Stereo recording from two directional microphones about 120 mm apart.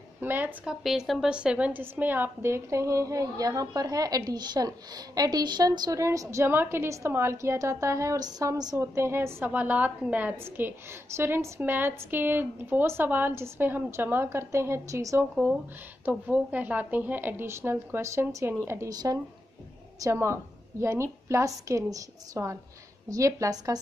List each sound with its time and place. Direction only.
0.2 s speech: 15° right (ahead or behind)
0.7 s a woman's voice: centre (ahead or behind); by 15.2 s 25° right (ahead or behind)
15.3 s a woman's voice: 5° right (ahead or behind); by 23.8 s 30° right (ahead or behind)